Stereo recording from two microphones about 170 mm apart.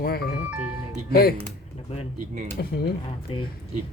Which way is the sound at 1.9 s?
35° left (ahead or behind).